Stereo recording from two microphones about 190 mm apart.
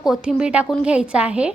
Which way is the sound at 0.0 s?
Centre (ahead or behind).